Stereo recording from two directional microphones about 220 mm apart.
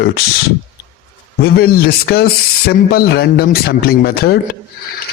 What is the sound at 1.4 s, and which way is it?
Speech, 45° left (ahead or behind).